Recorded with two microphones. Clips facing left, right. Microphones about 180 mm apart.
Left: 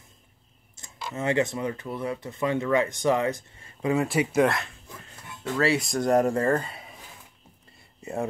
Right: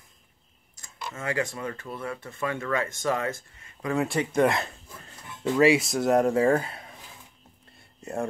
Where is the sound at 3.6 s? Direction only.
30° left (ahead or behind).